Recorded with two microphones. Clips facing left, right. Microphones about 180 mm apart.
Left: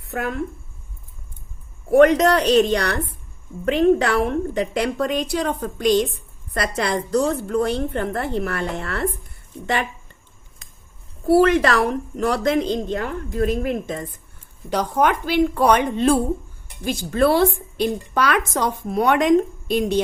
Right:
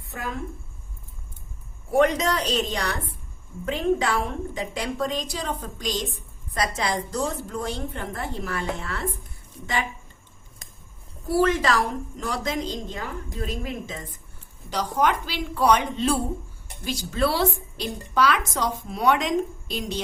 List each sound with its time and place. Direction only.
0.1 s a woman's voice: 65° left (ahead or behind)
1.9 s a woman's voice: 65° left (ahead or behind)
11.3 s a woman's voice: 65° left (ahead or behind)